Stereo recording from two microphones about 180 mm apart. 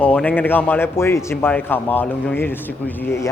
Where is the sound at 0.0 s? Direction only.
5° left (ahead or behind).